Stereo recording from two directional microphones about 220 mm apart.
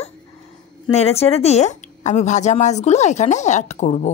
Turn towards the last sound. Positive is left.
turn(degrees=30)  # may be behind; listen again after turning